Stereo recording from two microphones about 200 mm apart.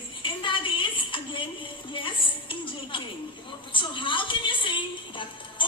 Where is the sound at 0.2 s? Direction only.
25° left (ahead or behind).